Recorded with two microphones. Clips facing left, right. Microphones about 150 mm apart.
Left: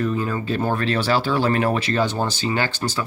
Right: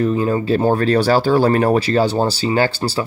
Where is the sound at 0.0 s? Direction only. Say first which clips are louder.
Right 6 dB; 30° right (ahead or behind).